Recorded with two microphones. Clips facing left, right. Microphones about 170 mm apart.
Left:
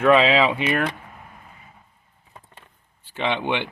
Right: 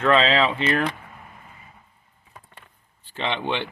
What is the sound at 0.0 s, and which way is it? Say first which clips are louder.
Speech: left 3 dB; 10° left (ahead or behind).